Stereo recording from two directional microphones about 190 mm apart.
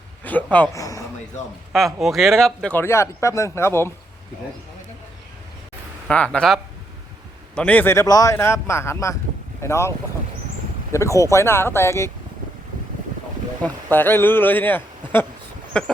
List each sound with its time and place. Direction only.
0.3 s speech: 10° left (ahead or behind)
1.7 s speech: centre (ahead or behind)
6.1 s speech: 5° left (ahead or behind)
10.9 s speech: 15° left (ahead or behind)
13.9 s speech: 10° left (ahead or behind)